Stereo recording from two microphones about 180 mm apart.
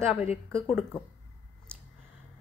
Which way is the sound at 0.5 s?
5° left (ahead or behind).